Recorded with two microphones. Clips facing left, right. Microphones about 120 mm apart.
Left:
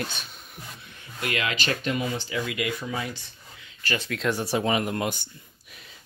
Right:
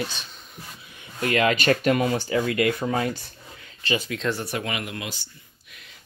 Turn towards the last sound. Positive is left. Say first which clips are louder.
# left 6 dB
turn(degrees=50)  # may be behind; listen again after turning